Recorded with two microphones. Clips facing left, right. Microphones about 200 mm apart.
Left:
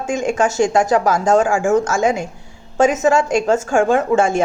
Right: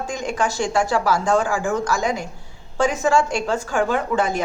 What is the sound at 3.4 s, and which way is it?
Speech, 45° left (ahead or behind).